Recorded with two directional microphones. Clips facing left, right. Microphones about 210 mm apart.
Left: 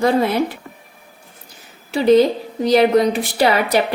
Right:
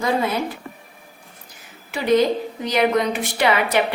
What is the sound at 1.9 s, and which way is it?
A woman's voice, 30° left (ahead or behind).